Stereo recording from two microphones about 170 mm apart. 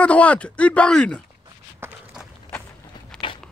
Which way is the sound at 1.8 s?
15° right (ahead or behind).